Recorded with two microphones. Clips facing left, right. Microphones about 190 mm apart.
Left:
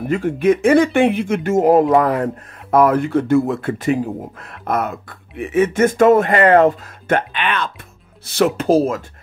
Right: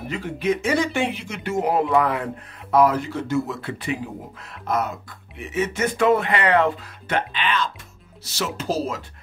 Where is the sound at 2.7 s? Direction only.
55° left (ahead or behind).